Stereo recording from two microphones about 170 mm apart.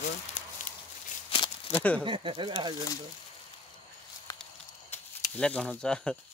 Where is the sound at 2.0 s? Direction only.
30° right (ahead or behind).